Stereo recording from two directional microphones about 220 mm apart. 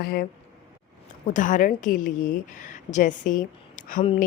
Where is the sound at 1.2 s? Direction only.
35° left (ahead or behind).